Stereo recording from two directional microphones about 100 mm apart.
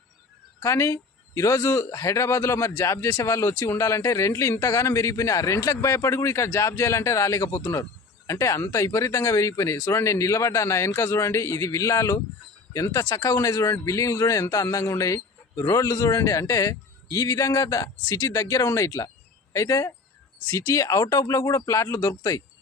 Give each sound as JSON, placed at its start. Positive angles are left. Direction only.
{"t": 0.6, "sound": "a man's voice", "side_deg": 30}